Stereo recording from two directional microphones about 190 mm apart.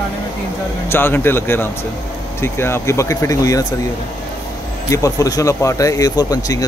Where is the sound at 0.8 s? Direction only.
10° left (ahead or behind).